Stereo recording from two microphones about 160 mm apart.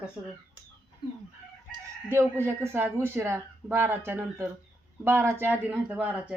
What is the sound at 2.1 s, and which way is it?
Speech, 15° right (ahead or behind).